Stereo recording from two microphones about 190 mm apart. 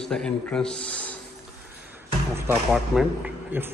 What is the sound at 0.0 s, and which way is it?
A man's voice, 5° left (ahead or behind).